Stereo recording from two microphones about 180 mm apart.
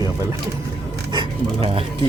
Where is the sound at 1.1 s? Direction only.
30° right (ahead or behind).